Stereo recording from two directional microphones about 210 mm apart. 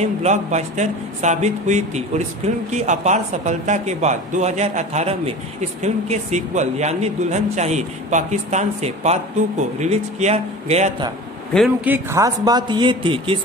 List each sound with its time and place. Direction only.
0.0 s speech: 35° right (ahead or behind)
11.5 s speech: 5° right (ahead or behind); by 13.4 s 25° right (ahead or behind)